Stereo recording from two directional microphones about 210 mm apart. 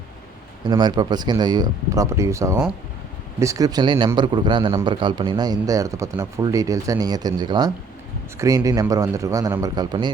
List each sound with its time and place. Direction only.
0.6 s a man's voice: 20° right (ahead or behind)